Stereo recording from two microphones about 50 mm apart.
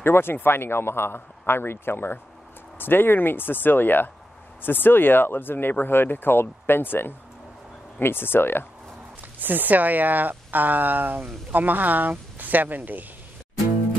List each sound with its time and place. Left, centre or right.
0.0 s speech: left
9.4 s a woman's voice: right